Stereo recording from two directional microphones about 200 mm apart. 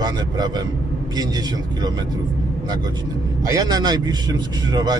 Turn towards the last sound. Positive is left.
turn(degrees=-20)  # may be behind; listen again after turning